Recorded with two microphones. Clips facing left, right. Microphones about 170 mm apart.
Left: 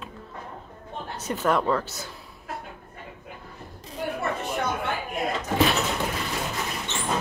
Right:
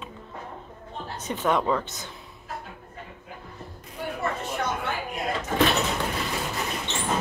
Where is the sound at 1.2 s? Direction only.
Centre (ahead or behind).